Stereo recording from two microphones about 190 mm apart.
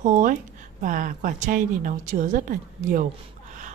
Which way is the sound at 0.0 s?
45° right (ahead or behind).